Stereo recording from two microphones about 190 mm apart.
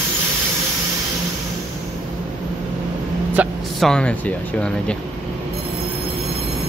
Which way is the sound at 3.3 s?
5° left (ahead or behind).